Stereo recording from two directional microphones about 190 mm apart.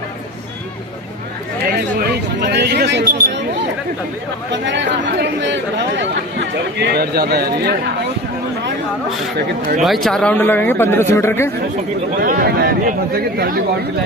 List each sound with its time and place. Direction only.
1.7 s a sound: 55° right (ahead or behind)
4.5 s chatter: 70° right (ahead or behind)
9.8 s speech: centre (ahead or behind)
12.2 s speech: 50° right (ahead or behind)